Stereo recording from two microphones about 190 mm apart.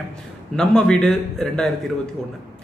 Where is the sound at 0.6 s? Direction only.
5° left (ahead or behind).